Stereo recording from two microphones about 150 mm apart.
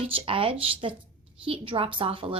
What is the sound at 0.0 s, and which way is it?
A woman's voice, 40° right (ahead or behind).